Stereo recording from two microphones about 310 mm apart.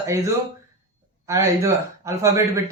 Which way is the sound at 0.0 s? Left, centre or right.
Centre.